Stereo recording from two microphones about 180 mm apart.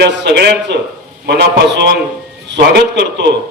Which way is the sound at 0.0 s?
65° right (ahead or behind).